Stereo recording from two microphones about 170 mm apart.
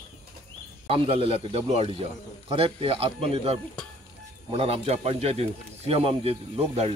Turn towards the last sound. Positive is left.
turn(degrees=-40)  # may be behind; listen again after turning